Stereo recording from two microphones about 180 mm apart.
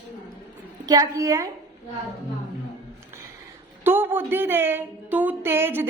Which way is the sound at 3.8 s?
10° right (ahead or behind).